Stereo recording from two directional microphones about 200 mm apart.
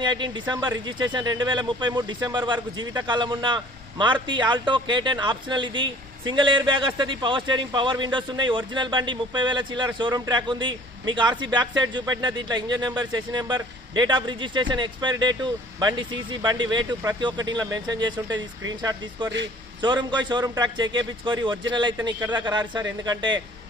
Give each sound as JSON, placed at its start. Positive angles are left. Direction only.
{"t": 0.0, "sound": "a man's voice", "side_deg": -20}